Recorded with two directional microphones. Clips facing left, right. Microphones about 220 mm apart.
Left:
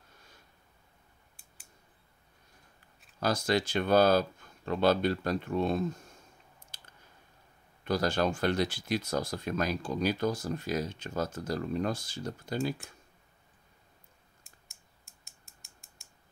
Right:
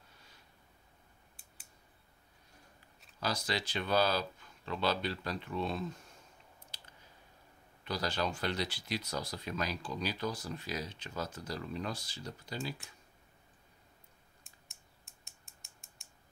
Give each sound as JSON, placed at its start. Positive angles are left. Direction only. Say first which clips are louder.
{"t": 3.2, "sound": "speech", "louder": "left 8 dB", "side_deg": 50}
{"t": 6.7, "sound": "a sound", "louder": "even", "side_deg": 50}
{"t": 7.8, "sound": "speech", "louder": "left 7 dB", "side_deg": 50}
{"t": 15.2, "sound": "creak", "louder": "left 1 dB", "side_deg": 0}